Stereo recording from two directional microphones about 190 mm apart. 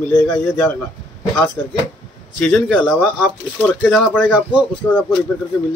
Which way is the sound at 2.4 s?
Centre (ahead or behind).